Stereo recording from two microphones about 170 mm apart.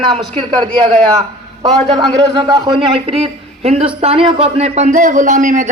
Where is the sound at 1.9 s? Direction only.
25° right (ahead or behind); by 5.7 s 50° right (ahead or behind).